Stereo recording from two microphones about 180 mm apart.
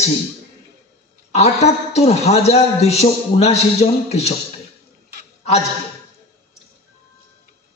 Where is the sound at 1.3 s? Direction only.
35° left (ahead or behind).